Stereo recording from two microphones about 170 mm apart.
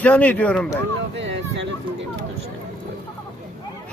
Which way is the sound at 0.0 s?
10° left (ahead or behind).